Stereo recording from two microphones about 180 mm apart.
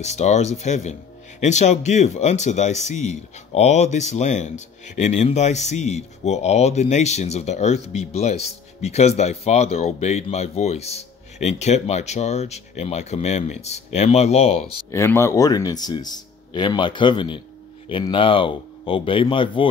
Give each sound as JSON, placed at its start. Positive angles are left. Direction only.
{"t": 0.0, "sound": "speech", "side_deg": 40}
{"t": 14.9, "sound": "speech", "side_deg": 15}